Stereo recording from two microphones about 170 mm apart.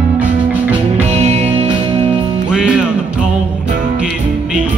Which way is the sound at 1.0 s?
40° right (ahead or behind).